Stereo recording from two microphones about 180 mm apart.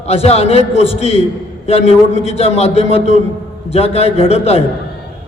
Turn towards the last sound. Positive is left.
turn(degrees=35)  # may be behind; listen again after turning